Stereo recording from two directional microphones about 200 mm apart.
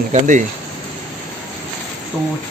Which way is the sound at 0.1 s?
35° right (ahead or behind).